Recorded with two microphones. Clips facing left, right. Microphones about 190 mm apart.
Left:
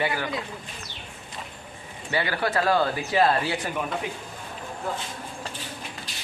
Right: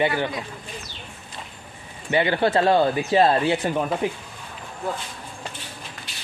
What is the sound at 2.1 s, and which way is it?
Speech, 20° right (ahead or behind).